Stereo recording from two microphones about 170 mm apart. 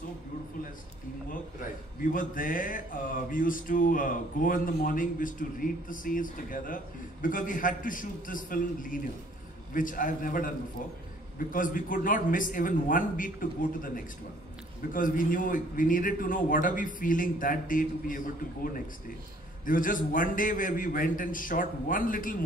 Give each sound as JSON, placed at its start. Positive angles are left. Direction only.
{"t": 2.1, "sound": "speech", "side_deg": 55}